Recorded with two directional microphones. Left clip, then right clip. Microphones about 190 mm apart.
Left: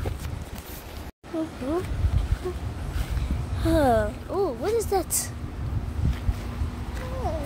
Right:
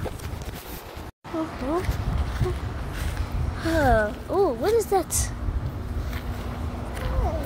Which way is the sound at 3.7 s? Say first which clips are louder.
Even; 15° left (ahead or behind).